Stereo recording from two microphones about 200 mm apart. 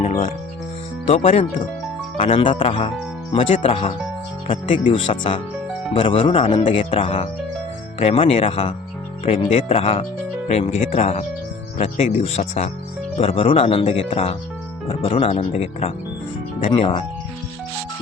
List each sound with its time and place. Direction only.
0.0 s speech: 40° left (ahead or behind)
1.0 s speech: 30° left (ahead or behind)